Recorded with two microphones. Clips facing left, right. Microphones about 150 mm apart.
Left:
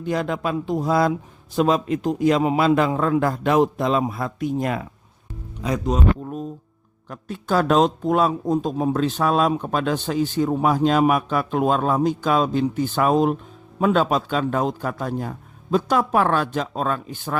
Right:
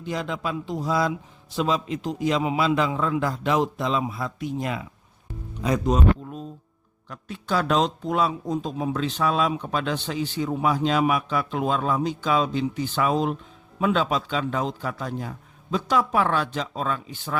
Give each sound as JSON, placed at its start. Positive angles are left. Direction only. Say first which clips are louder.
{"t": 0.0, "sound": "speech", "louder": "left 5 dB", "side_deg": 50}
{"t": 7.1, "sound": "speech", "louder": "left 4 dB", "side_deg": 45}